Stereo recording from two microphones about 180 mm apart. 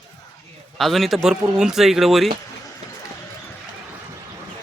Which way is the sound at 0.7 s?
Centre (ahead or behind).